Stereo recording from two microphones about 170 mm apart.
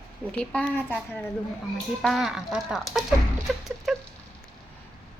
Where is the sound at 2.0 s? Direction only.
Centre (ahead or behind).